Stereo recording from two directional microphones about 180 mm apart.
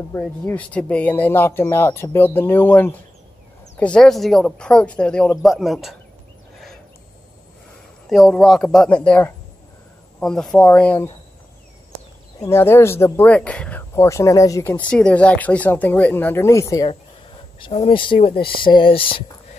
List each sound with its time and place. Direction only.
0.1 s speech: 10° left (ahead or behind)
8.1 s speech: centre (ahead or behind)
12.4 s speech: 15° left (ahead or behind); by 19.2 s 30° left (ahead or behind)